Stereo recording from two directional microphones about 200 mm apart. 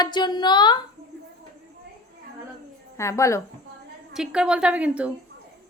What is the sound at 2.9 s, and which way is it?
Speech, 15° left (ahead or behind).